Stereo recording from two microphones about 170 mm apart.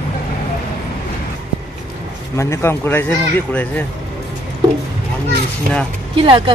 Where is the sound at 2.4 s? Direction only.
15° left (ahead or behind).